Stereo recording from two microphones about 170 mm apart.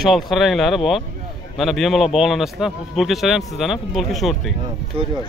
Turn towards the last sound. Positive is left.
turn(degrees=-35)  # may be behind; listen again after turning